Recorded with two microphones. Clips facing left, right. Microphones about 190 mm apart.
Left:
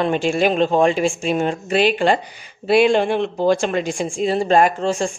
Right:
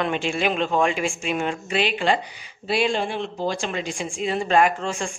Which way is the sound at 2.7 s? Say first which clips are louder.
Left 8 dB; 60° left (ahead or behind).